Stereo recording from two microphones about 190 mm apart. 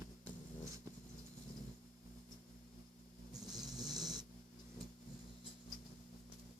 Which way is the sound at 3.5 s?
20° right (ahead or behind).